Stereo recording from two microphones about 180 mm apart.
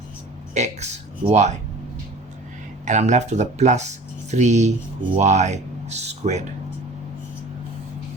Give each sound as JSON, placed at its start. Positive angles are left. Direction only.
{"t": 0.5, "sound": "speech", "side_deg": -40}
{"t": 2.8, "sound": "speech", "side_deg": -40}